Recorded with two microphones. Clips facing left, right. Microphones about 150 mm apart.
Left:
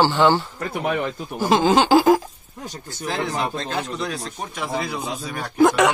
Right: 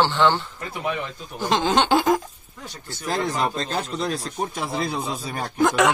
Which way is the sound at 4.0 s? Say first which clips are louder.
Right 2 dB; 35° right (ahead or behind).